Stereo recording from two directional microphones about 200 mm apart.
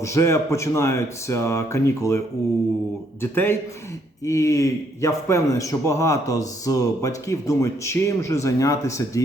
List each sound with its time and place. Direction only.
0.0 s a man's voice: 15° left (ahead or behind)